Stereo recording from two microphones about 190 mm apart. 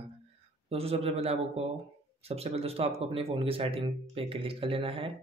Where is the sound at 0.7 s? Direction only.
30° right (ahead or behind).